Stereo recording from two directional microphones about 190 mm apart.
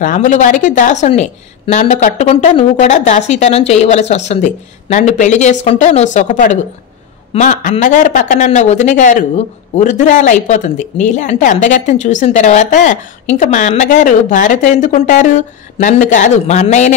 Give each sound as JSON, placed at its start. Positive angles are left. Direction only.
{"t": 0.0, "sound": "speech", "side_deg": 40}